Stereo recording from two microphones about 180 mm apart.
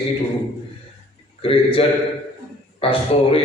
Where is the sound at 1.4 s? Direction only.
30° left (ahead or behind).